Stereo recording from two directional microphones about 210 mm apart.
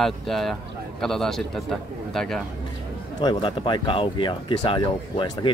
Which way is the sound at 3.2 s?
20° left (ahead or behind).